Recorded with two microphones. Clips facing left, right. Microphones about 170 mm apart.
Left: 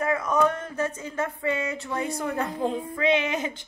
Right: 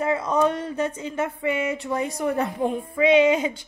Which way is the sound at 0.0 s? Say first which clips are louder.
Right 2 dB; 30° right (ahead or behind).